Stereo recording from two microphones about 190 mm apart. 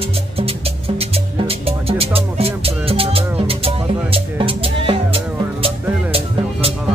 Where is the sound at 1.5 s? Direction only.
30° right (ahead or behind).